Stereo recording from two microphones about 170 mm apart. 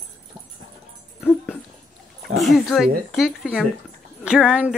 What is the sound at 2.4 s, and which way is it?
Speech, centre (ahead or behind).